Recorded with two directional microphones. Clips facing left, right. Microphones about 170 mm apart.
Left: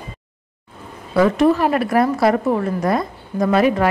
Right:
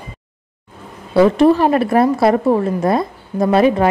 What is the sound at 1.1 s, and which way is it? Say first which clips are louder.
Speech: right 4 dB; 30° right (ahead or behind).